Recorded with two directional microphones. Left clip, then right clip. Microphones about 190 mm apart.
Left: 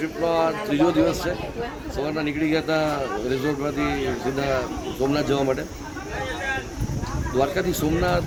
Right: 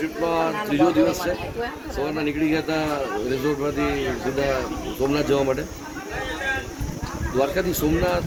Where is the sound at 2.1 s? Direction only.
25° left (ahead or behind).